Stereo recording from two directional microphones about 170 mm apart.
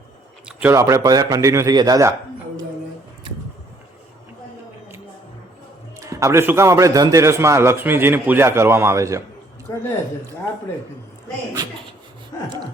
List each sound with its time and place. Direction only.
0.4 s a man's voice: 10° right (ahead or behind)
6.0 s a man's voice: 20° right (ahead or behind)
9.7 s a woman's voice: 20° left (ahead or behind)